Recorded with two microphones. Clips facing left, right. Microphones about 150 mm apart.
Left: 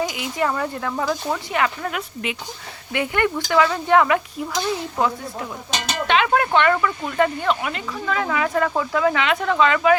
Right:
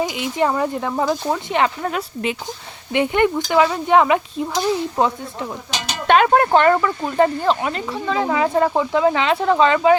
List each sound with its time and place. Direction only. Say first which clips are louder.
0.0 s speech: right 3 dB; 25° right (ahead or behind)
2.9 s speech: right 5 dB; 20° right (ahead or behind)
6.1 s speech: right 5 dB; 45° right (ahead or behind); by 10.0 s 30° right (ahead or behind)